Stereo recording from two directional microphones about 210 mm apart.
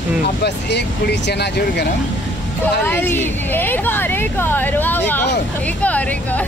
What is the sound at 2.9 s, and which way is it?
Speech, 10° left (ahead or behind).